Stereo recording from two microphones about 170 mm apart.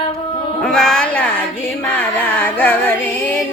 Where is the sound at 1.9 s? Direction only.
10° left (ahead or behind).